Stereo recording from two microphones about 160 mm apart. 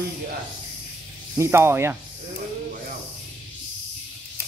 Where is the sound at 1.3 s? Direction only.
15° right (ahead or behind).